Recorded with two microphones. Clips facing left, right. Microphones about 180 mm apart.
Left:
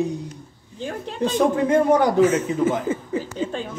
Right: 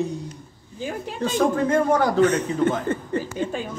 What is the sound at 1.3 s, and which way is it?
Speech, 15° left (ahead or behind).